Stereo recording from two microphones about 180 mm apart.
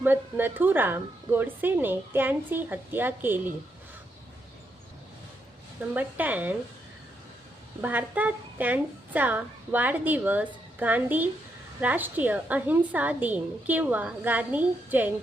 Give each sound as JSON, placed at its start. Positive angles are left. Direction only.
{"t": 0.0, "sound": "a woman's voice", "side_deg": -10}
{"t": 5.9, "sound": "a woman's voice", "side_deg": -10}
{"t": 7.8, "sound": "a woman's voice", "side_deg": -10}